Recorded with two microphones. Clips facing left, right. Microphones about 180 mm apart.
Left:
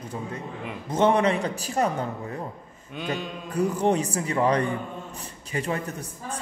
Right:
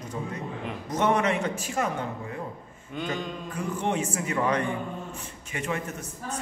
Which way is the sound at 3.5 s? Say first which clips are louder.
Left 7 dB; 40° left (ahead or behind).